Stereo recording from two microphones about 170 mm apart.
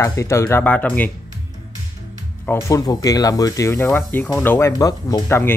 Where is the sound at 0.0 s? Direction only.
20° left (ahead or behind).